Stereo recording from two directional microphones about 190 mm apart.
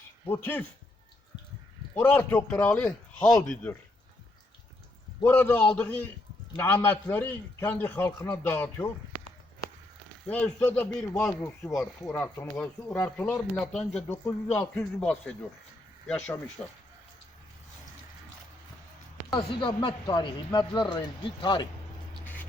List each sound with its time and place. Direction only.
0.3 s a man's voice: 10° left (ahead or behind)
2.0 s a man's voice: 10° left (ahead or behind)
5.2 s a man's voice: 10° left (ahead or behind)
10.2 s a man's voice: 10° left (ahead or behind)
19.3 s speech: 25° left (ahead or behind)